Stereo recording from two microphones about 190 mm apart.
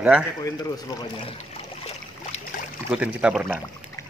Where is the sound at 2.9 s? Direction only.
5° right (ahead or behind).